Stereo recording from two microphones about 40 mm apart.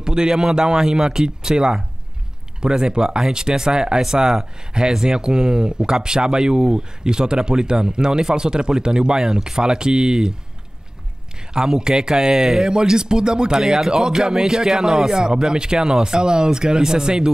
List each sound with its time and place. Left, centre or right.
0.0 s speech: centre
11.3 s speech: centre